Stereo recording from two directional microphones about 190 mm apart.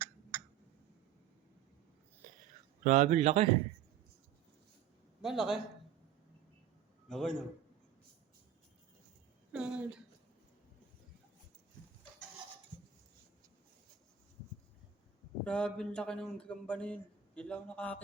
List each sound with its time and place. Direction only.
0.0 s a sound: 10° right (ahead or behind)
2.8 s speech: 40° right (ahead or behind)
5.2 s a man's voice: centre (ahead or behind)
7.1 s a man's voice: centre (ahead or behind)
9.5 s a woman's voice: 5° right (ahead or behind)
15.4 s a man's voice: 5° left (ahead or behind)